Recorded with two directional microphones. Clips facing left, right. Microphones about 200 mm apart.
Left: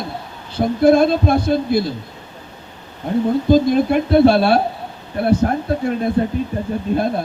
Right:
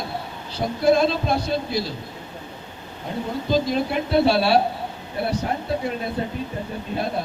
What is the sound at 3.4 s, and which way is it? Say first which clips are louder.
Speech: left 6 dB; 50° left (ahead or behind).